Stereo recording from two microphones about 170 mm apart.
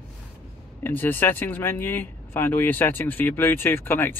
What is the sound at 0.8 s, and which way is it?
Speech, 10° left (ahead or behind).